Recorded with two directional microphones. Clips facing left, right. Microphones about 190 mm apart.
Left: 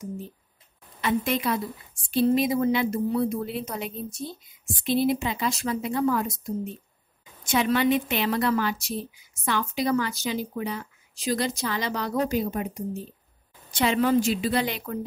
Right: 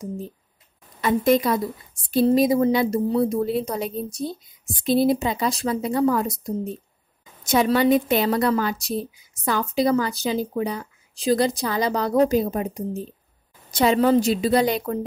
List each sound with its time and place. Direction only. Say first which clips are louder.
1.0 s a woman's voice: right 6 dB; 40° right (ahead or behind)